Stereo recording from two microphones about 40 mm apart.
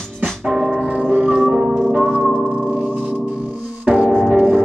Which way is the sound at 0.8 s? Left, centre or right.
Right.